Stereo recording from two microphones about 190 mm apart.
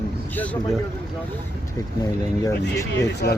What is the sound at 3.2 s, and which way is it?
Speech, 55° left (ahead or behind).